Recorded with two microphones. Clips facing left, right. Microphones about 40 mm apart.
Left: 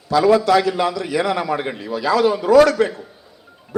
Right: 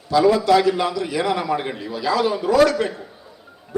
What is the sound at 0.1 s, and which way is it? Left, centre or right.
A man's voice, left.